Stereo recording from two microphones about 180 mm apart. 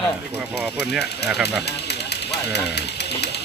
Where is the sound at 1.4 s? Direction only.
65° left (ahead or behind).